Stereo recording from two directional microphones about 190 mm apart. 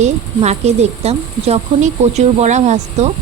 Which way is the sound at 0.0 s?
35° right (ahead or behind).